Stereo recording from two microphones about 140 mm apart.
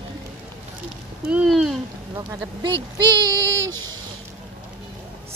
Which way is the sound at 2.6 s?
35° right (ahead or behind).